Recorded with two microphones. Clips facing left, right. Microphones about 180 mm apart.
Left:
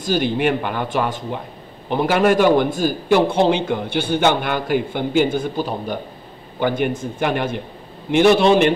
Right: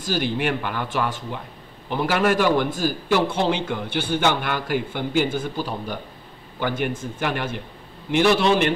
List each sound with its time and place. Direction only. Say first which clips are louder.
0.1 s a man's voice: left 5 dB; 20° left (ahead or behind)